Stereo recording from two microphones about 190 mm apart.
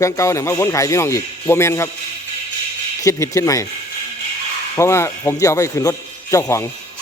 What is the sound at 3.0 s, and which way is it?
Speech, 15° left (ahead or behind).